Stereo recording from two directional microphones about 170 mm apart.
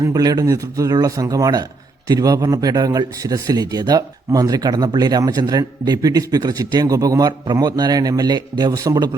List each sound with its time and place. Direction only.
0.0 s a man's voice: 20° right (ahead or behind)